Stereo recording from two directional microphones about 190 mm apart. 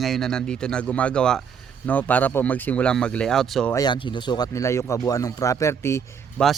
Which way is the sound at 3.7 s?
20° left (ahead or behind).